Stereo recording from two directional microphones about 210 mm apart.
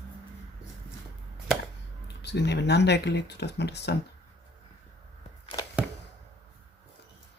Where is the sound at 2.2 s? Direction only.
55° left (ahead or behind).